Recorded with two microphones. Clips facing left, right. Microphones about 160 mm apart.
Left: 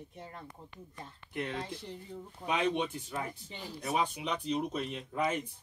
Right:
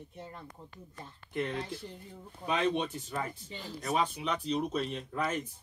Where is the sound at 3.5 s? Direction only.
15° left (ahead or behind).